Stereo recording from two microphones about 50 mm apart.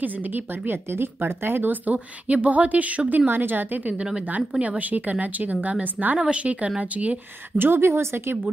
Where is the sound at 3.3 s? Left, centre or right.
Right.